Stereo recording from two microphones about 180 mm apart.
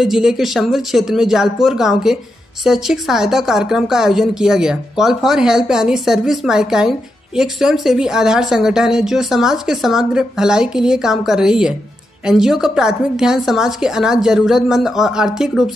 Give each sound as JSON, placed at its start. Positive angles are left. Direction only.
{"t": 0.0, "sound": "speech", "side_deg": -5}